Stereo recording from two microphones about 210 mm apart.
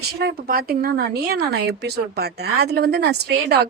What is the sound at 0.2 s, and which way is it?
Speech, 50° right (ahead or behind).